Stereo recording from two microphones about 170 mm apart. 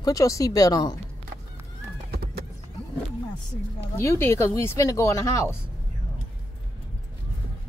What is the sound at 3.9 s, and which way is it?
Speech, 15° left (ahead or behind).